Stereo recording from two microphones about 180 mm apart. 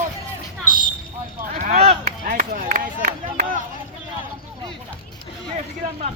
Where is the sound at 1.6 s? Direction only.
40° right (ahead or behind).